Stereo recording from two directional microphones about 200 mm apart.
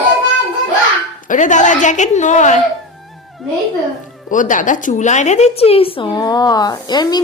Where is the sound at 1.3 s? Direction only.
40° left (ahead or behind).